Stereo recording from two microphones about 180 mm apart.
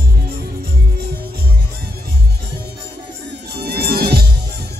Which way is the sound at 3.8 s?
60° right (ahead or behind).